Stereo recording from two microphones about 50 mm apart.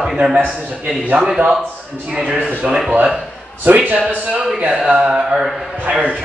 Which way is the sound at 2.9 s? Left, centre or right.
Right.